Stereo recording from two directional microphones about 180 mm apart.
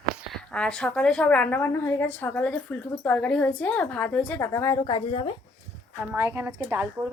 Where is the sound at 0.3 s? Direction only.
5° left (ahead or behind); by 5.3 s 30° left (ahead or behind).